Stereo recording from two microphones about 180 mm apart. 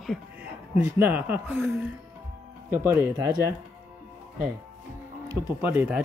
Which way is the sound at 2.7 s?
15° right (ahead or behind).